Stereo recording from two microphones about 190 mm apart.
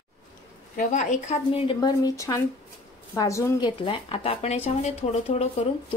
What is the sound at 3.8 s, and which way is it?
Speech, 30° left (ahead or behind).